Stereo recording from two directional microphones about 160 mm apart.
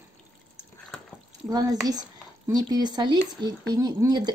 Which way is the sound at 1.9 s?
25° right (ahead or behind).